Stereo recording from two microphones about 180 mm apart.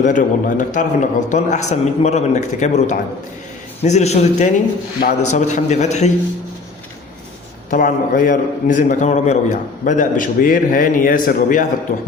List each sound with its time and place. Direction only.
0.0 s a man's voice: 45° left (ahead or behind)
7.7 s a man's voice: 50° left (ahead or behind)